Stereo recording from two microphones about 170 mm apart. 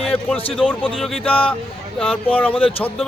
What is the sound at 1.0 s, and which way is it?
Speech, centre (ahead or behind).